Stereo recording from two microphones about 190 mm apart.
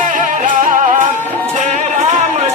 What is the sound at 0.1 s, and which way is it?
Music, 45° right (ahead or behind).